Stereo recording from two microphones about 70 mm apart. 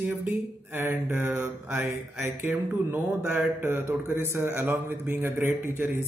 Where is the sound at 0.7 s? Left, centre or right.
Right.